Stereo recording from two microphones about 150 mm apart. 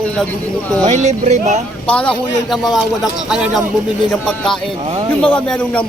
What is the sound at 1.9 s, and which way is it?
A man's voice, 5° left (ahead or behind).